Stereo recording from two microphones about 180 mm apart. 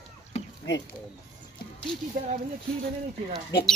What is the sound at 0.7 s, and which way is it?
Speech, 75° left (ahead or behind).